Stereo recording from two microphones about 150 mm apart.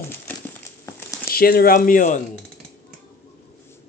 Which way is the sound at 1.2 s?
85° left.